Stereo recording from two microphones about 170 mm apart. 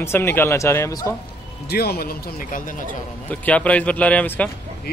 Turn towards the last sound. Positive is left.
turn(degrees=10)  # may be behind; listen again after turning